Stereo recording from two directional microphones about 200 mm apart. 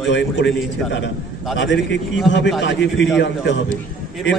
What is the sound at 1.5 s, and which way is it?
A man's voice, 65° left (ahead or behind).